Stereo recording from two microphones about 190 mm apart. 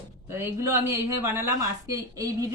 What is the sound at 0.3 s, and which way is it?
A woman's voice, 15° right (ahead or behind).